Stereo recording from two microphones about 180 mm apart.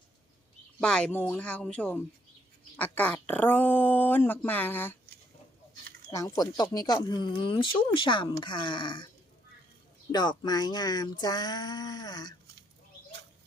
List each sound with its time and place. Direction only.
0.8 s speech: 5° left (ahead or behind)
6.1 s speech: 20° left (ahead or behind)
10.1 s speech: 25° left (ahead or behind)